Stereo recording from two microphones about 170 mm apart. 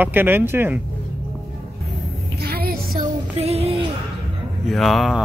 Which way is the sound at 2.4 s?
65° right (ahead or behind).